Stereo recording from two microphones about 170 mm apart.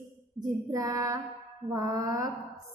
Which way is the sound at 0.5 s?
20° right (ahead or behind).